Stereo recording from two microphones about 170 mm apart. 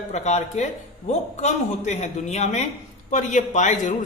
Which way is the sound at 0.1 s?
40° left (ahead or behind).